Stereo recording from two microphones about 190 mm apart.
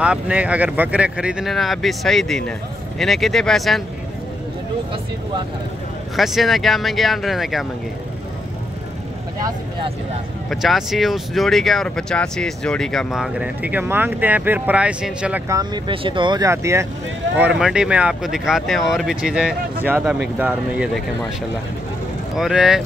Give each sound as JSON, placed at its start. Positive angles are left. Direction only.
{"t": 0.0, "sound": "speech", "side_deg": -5}
{"t": 6.1, "sound": "speech", "side_deg": 0}
{"t": 9.4, "sound": "speech", "side_deg": -25}
{"t": 10.5, "sound": "speech", "side_deg": 0}
{"t": 15.9, "sound": "speech", "side_deg": -25}
{"t": 17.4, "sound": "speech", "side_deg": -5}
{"t": 22.4, "sound": "speech", "side_deg": -5}